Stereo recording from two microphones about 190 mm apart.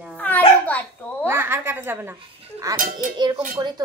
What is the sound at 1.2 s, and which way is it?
Speech, 10° right (ahead or behind).